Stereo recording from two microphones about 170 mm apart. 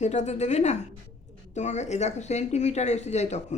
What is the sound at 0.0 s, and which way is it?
Speech, 45° left (ahead or behind).